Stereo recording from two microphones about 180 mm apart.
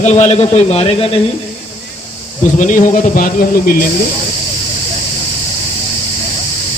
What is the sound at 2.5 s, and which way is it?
A man's voice, 45° left (ahead or behind).